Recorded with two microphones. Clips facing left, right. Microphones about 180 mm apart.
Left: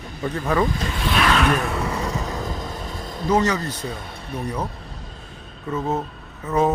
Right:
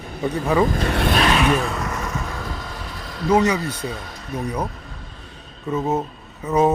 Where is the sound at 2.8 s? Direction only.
45° left (ahead or behind).